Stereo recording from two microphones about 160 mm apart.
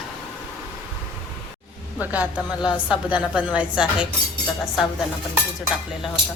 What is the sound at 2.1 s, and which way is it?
A woman's voice, 5° right (ahead or behind).